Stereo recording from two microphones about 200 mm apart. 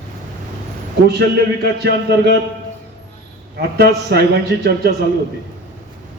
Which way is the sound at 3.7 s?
55° right (ahead or behind).